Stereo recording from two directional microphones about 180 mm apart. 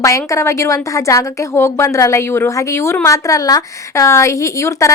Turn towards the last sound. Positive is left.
turn(degrees=15)  # may be behind; listen again after turning